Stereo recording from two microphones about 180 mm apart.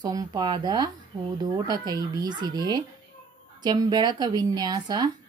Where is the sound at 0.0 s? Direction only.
20° right (ahead or behind).